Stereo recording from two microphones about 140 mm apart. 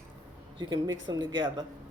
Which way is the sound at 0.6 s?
35° right (ahead or behind).